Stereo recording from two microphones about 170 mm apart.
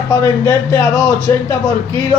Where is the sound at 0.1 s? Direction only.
15° left (ahead or behind).